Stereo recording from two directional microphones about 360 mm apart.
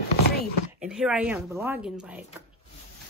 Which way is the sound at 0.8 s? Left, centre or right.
Centre.